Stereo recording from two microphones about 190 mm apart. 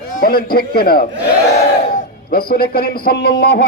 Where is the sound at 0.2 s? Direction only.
50° left (ahead or behind).